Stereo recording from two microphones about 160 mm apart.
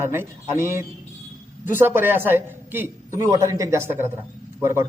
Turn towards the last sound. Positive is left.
turn(degrees=-15)  # may be behind; listen again after turning